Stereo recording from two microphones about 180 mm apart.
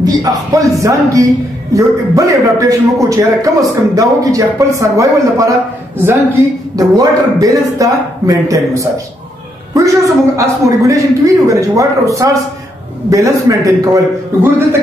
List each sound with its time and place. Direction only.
0.0 s a man's voice: 20° right (ahead or behind)
6.8 s a man's voice: 20° right (ahead or behind)